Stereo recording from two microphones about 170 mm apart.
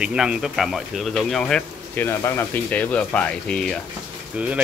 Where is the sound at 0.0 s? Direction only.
5° right (ahead or behind).